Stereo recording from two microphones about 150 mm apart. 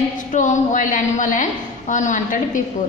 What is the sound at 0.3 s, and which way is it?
A woman's voice, 55° left (ahead or behind).